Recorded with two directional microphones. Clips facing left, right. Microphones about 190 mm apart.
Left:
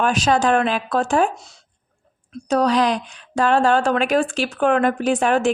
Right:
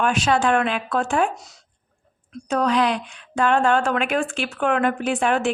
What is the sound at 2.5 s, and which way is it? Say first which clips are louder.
Speech: left 3 dB; 35° left (ahead or behind).